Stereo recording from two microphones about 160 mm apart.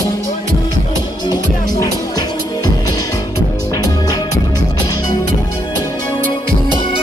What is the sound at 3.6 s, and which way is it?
Music, 25° left (ahead or behind).